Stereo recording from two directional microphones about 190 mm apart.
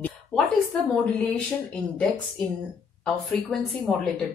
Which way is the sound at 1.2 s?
5° left (ahead or behind).